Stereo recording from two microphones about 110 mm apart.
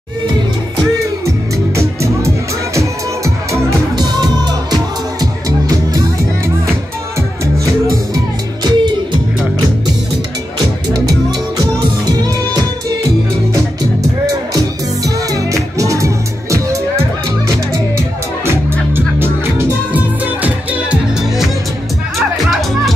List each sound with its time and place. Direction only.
1.8 s music: 25° right (ahead or behind)
3.9 s music: 40° right (ahead or behind)
8.6 s music: 45° right (ahead or behind)
10.9 s music: 35° right (ahead or behind)
14.2 s music: 30° right (ahead or behind)
18.4 s music: 20° right (ahead or behind)